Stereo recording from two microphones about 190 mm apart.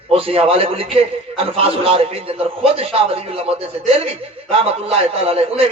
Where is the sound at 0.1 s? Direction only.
30° right (ahead or behind).